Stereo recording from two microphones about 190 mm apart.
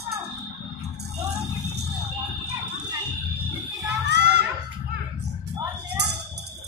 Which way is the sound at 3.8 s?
65° right (ahead or behind).